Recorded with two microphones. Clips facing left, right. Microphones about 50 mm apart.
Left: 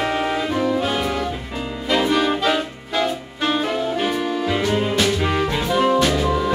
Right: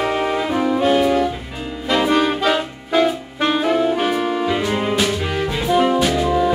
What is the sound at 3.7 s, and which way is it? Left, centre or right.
Saxophone, right.